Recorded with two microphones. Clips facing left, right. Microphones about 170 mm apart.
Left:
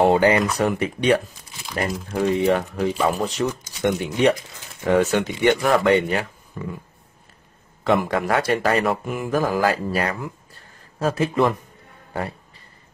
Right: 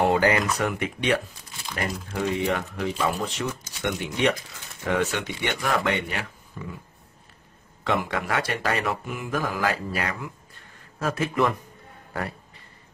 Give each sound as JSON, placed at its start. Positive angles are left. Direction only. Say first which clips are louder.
{"t": 0.0, "sound": "speech", "louder": "left 5 dB", "side_deg": 30}
{"t": 2.2, "sound": "speech", "louder": "left 7 dB", "side_deg": 35}
{"t": 7.8, "sound": "speech", "louder": "left 6 dB", "side_deg": 40}